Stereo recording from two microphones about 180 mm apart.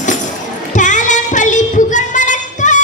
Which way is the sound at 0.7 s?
45° left (ahead or behind).